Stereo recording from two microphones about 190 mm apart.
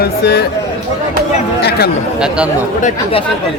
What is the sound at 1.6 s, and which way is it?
Speech, 55° left (ahead or behind).